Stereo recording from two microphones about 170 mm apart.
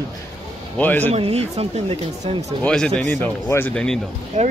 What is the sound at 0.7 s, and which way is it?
Speech, 10° left (ahead or behind).